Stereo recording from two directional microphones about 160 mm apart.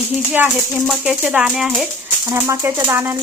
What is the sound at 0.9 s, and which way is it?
A woman's voice, 5° right (ahead or behind).